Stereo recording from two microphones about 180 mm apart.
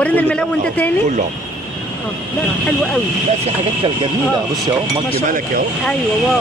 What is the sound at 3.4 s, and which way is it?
Speech, 30° right (ahead or behind).